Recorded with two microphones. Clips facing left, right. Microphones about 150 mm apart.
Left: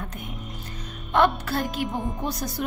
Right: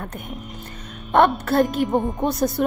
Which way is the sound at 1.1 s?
50° right (ahead or behind).